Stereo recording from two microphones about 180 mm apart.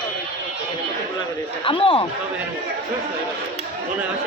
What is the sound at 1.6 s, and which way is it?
Speech, 30° left (ahead or behind).